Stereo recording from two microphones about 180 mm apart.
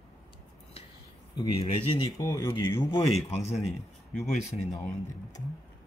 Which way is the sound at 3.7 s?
Centre (ahead or behind).